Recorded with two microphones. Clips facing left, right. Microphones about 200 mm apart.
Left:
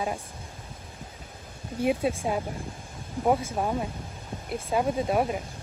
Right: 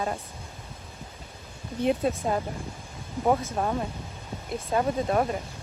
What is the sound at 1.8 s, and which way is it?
Speech, 10° left (ahead or behind).